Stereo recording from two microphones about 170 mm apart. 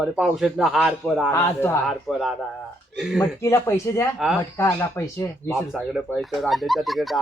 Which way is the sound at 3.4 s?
15° left (ahead or behind).